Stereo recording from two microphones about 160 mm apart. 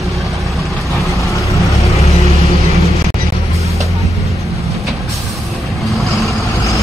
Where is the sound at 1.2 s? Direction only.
20° left (ahead or behind).